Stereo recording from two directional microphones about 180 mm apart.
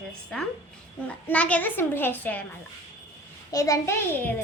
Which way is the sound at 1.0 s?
10° left (ahead or behind).